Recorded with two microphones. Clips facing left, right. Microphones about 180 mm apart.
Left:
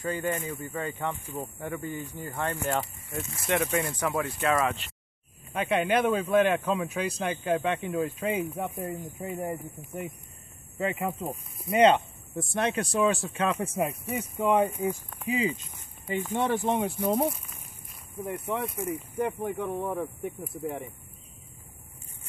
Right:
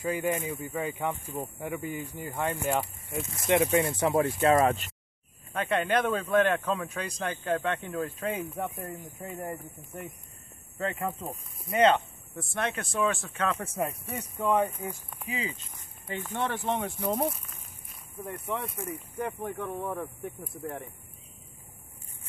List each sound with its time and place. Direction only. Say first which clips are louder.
0.0 s speech: right 1 dB; 10° right (ahead or behind); by 4.7 s 30° right (ahead or behind)
5.5 s speech: left 2 dB; 5° left (ahead or behind)
14.4 s speech: left 3 dB; 15° left (ahead or behind); by 20.9 s centre (ahead or behind)